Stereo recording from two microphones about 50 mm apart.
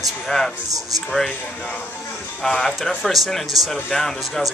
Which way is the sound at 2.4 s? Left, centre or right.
Centre.